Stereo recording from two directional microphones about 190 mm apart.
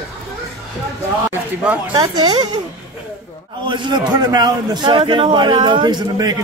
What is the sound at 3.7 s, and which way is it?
A man's voice, 25° right (ahead or behind).